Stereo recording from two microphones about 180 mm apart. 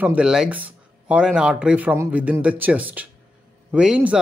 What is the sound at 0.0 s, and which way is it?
Speech, 5° right (ahead or behind).